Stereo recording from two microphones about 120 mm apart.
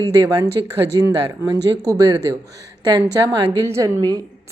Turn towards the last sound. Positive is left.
turn(degrees=-30)  # may be behind; listen again after turning